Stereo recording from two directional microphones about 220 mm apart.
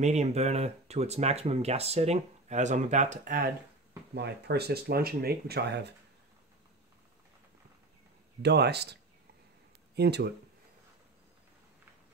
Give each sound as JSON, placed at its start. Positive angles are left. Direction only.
{"t": 0.0, "sound": "speech", "side_deg": -30}
{"t": 8.4, "sound": "speech", "side_deg": -50}
{"t": 9.9, "sound": "speech", "side_deg": -50}